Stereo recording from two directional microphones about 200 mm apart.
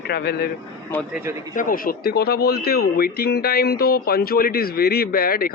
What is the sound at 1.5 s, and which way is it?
A man's voice, 45° left (ahead or behind).